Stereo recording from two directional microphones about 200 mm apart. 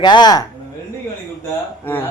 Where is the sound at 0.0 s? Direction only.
20° left (ahead or behind).